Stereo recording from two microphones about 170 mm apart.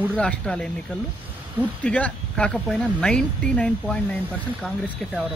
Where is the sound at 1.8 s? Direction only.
5° left (ahead or behind).